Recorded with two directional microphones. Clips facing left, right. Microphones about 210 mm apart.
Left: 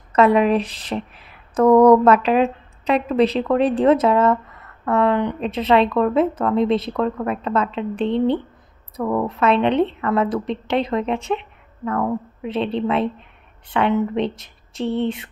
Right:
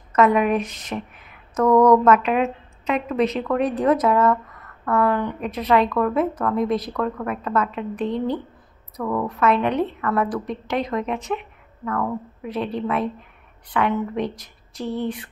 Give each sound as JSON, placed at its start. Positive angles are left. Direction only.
{"t": 0.1, "sound": "speech", "side_deg": 30}